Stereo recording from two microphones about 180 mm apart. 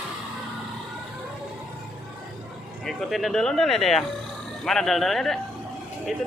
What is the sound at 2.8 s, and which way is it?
Speech, centre (ahead or behind).